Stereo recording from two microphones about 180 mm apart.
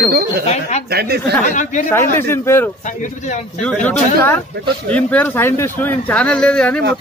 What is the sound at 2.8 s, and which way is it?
Speech, 45° left (ahead or behind).